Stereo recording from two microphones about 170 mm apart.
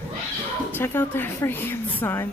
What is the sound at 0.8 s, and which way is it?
A woman's voice, 10° left (ahead or behind).